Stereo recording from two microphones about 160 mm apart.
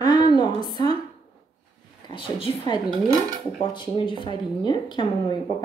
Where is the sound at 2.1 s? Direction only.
35° left (ahead or behind).